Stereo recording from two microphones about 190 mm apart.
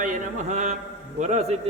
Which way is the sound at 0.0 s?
40° right (ahead or behind).